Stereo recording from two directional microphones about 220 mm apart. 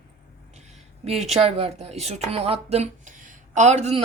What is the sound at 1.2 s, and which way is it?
Speech, 30° right (ahead or behind).